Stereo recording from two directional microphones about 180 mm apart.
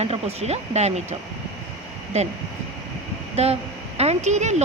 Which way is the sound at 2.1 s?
35° right (ahead or behind).